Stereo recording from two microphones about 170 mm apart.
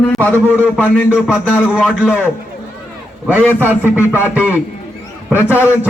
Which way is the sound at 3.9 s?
10° right (ahead or behind).